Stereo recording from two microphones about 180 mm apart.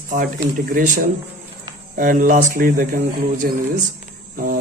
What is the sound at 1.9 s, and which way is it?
Speech, 45° right (ahead or behind).